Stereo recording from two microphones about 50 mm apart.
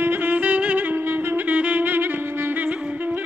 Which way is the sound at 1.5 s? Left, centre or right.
Right.